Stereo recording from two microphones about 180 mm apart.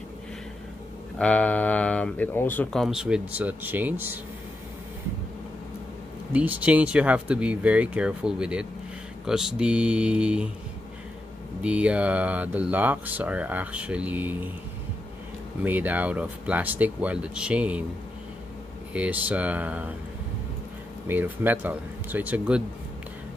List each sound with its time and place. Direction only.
1.1 s speech: 5° left (ahead or behind); by 4.2 s 10° right (ahead or behind)
6.3 s speech: 10° right (ahead or behind)
11.6 s speech: 5° right (ahead or behind)
15.6 s speech: 10° right (ahead or behind)
18.9 s speech: 10° right (ahead or behind)
21.1 s speech: 10° right (ahead or behind)